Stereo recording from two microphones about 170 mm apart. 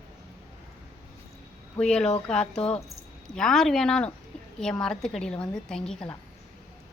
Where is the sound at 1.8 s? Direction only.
5° left (ahead or behind).